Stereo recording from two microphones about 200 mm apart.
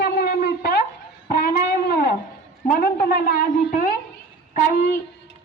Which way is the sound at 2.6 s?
45° left (ahead or behind).